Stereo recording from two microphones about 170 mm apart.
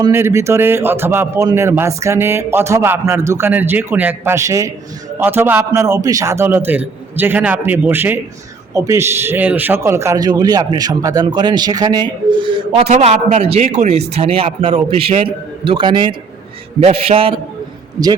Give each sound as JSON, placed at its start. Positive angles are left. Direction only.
{"t": 0.0, "sound": "a man's voice", "side_deg": -15}